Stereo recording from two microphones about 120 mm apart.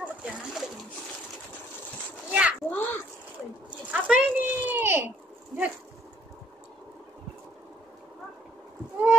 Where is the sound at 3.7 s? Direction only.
10° right (ahead or behind).